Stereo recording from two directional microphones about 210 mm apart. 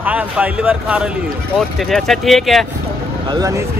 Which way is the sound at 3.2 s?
15° right (ahead or behind).